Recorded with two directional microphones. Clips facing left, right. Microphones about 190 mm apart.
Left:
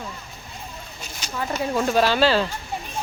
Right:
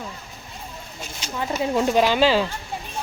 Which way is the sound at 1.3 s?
15° right (ahead or behind).